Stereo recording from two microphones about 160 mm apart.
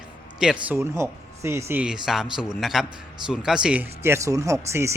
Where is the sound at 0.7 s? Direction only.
15° right (ahead or behind).